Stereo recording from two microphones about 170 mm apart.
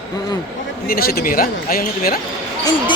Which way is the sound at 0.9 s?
60° left (ahead or behind).